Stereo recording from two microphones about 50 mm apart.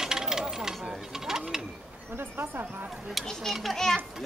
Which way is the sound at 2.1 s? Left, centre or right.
Right.